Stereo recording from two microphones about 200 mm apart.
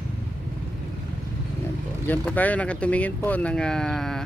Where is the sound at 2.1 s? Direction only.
10° left (ahead or behind).